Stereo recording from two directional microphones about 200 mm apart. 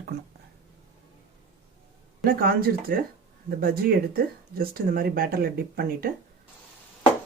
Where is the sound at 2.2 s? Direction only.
45° right (ahead or behind).